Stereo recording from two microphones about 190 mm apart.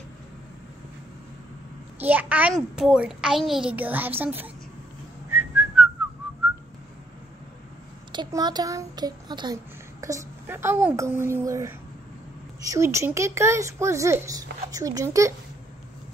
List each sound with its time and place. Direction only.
2.0 s a child's voice: 10° right (ahead or behind)
5.3 s whistling: 10° right (ahead or behind)
8.1 s a child's voice: 20° right (ahead or behind)